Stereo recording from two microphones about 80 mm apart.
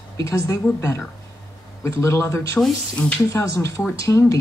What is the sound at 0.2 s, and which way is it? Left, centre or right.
Speech, left.